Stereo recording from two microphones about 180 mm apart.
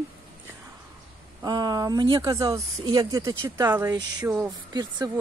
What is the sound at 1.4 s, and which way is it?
Speech, 20° right (ahead or behind).